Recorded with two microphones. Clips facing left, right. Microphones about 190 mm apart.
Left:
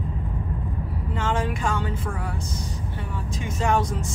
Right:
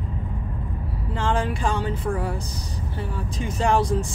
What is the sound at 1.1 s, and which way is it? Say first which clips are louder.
Speech: right 2 dB; 30° right (ahead or behind).